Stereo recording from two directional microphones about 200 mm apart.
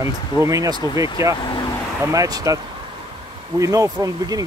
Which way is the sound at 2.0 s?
15° right (ahead or behind).